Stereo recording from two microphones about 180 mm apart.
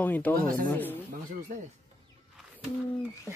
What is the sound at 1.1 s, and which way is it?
Speech, 45° right (ahead or behind).